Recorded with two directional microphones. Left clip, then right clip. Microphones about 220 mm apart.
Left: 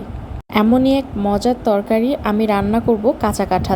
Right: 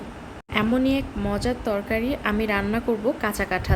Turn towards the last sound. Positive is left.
turn(degrees=20)  # may be behind; listen again after turning